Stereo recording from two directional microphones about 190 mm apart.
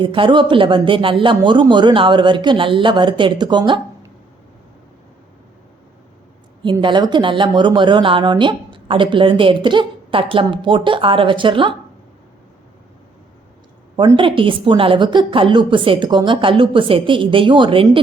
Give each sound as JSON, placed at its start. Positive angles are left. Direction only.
{"t": 0.0, "sound": "speech", "side_deg": -25}
{"t": 6.6, "sound": "speech", "side_deg": -25}
{"t": 13.9, "sound": "speech", "side_deg": -25}